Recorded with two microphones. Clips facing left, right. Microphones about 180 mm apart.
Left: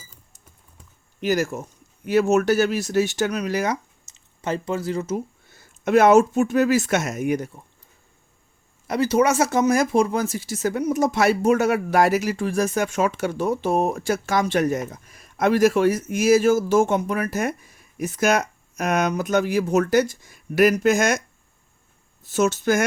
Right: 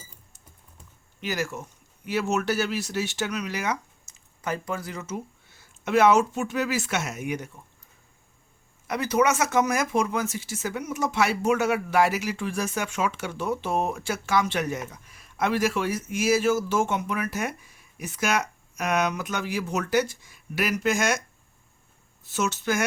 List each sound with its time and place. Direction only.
1.2 s speech: 40° left (ahead or behind)
4.4 s speech: 25° left (ahead or behind)
8.9 s speech: 30° left (ahead or behind)
22.3 s speech: 45° left (ahead or behind)